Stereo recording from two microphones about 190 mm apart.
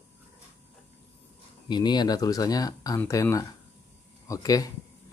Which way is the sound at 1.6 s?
25° left (ahead or behind).